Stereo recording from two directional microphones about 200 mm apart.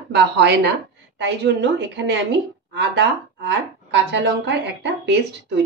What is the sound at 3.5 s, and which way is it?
A woman's voice, 60° right (ahead or behind).